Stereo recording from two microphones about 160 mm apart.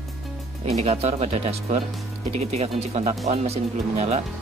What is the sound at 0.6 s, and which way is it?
Speech, 40° right (ahead or behind).